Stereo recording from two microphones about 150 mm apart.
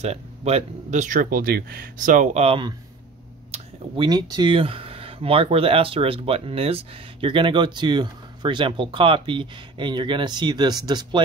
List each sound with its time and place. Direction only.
0.0 s speech: 45° right (ahead or behind); by 2.4 s 60° right (ahead or behind)
2.4 s speech: 35° right (ahead or behind)